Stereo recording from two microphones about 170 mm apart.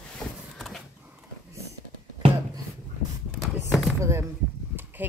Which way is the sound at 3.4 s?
Centre (ahead or behind).